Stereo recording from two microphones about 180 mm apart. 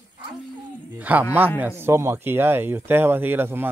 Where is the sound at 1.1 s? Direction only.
10° right (ahead or behind).